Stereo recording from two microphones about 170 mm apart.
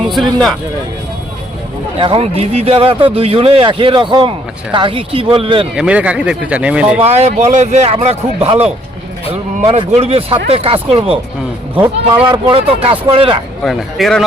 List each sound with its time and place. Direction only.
0.1 s speech: centre (ahead or behind)
2.0 s speech: 35° right (ahead or behind)
5.7 s speech: 5° right (ahead or behind)
7.0 s speech: 40° right (ahead or behind)
12.2 s speech: 30° right (ahead or behind)
13.7 s speech: centre (ahead or behind)